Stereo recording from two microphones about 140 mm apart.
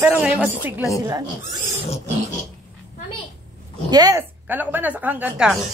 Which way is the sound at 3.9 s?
30° right (ahead or behind).